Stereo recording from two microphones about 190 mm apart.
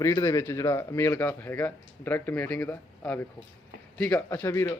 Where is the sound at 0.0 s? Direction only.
15° left (ahead or behind).